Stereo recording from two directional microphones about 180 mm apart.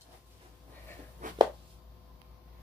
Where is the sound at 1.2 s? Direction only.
45° right (ahead or behind).